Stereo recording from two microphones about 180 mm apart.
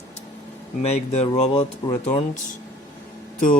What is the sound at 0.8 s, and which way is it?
Speech, 35° left (ahead or behind).